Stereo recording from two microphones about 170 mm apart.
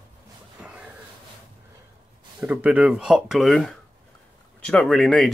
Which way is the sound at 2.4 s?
10° right (ahead or behind).